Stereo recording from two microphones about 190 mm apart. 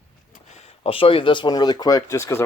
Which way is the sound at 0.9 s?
30° left (ahead or behind).